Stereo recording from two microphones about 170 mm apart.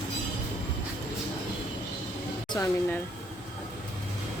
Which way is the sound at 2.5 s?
20° left (ahead or behind).